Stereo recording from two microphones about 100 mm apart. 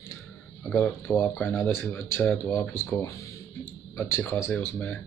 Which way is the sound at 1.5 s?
20° left (ahead or behind).